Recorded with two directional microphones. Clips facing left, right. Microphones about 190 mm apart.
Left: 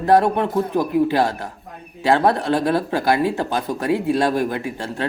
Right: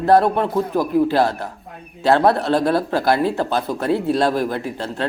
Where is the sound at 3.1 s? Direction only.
15° left (ahead or behind).